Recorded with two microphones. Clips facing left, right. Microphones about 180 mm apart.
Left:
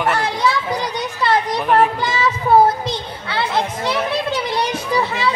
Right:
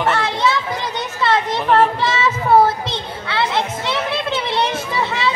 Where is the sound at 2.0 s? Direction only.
25° right (ahead or behind).